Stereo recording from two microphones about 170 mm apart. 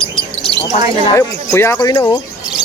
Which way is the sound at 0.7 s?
45° left (ahead or behind).